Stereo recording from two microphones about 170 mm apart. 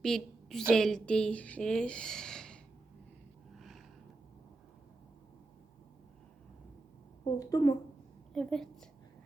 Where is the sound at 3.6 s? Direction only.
Centre (ahead or behind).